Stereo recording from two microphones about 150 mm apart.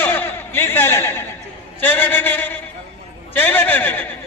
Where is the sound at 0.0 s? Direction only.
15° left (ahead or behind).